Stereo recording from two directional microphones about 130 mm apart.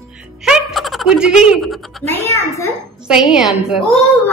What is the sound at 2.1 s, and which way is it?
Speech, 20° left (ahead or behind).